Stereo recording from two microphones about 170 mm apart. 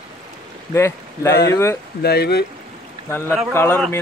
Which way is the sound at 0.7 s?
15° left (ahead or behind).